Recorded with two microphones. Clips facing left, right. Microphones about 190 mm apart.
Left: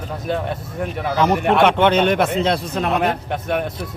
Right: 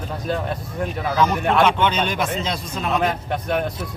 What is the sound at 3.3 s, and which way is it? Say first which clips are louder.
Speech: left 1 dB; centre (ahead or behind).